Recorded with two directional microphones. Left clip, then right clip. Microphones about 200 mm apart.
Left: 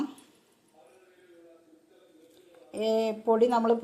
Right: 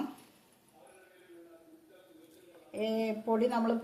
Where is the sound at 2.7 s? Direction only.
45° left (ahead or behind).